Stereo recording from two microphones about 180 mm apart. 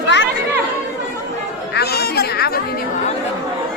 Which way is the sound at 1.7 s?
65° left (ahead or behind).